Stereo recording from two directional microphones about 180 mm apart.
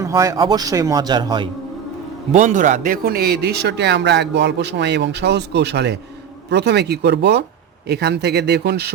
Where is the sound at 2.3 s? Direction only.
45° right (ahead or behind).